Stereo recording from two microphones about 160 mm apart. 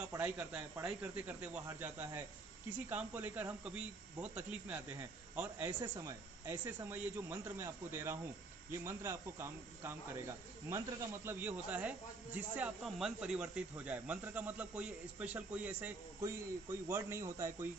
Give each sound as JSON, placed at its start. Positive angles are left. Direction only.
{"t": 0.1, "sound": "speech", "side_deg": -10}
{"t": 5.8, "sound": "speech", "side_deg": -20}